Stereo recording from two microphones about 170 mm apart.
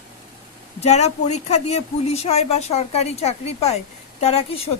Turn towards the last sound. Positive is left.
turn(degrees=35)  # may be behind; listen again after turning